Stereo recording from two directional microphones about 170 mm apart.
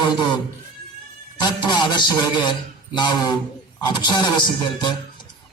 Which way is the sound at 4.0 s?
25° left (ahead or behind).